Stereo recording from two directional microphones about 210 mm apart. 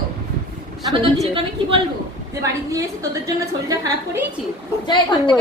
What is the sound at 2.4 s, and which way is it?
A woman's voice, 15° right (ahead or behind).